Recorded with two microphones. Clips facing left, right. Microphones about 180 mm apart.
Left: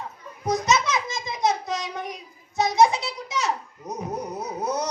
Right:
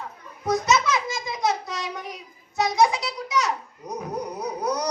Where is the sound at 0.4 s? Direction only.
20° left (ahead or behind).